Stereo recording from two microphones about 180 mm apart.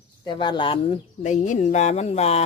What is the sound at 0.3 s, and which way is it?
Speech, 25° left (ahead or behind).